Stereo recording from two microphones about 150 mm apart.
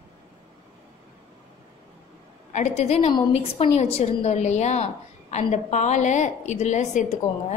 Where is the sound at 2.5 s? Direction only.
50° left (ahead or behind).